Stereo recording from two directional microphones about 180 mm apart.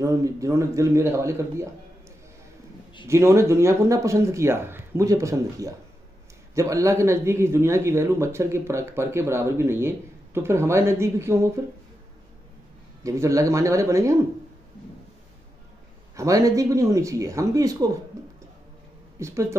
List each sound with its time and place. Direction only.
0.0 s speech: 15° right (ahead or behind)
3.1 s speech: 15° right (ahead or behind)
13.0 s speech: 15° right (ahead or behind)
16.2 s speech: 20° right (ahead or behind)
19.1 s speech: 15° right (ahead or behind)